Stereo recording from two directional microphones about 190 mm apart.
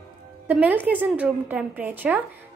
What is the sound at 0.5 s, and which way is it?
A woman's voice, 10° right (ahead or behind).